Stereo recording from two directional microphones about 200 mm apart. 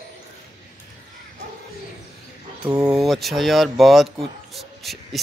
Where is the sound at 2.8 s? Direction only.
5° right (ahead or behind).